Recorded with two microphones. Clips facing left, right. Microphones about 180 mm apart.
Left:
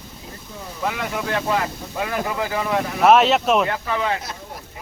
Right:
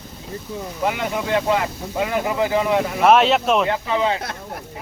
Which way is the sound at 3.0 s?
Centre (ahead or behind).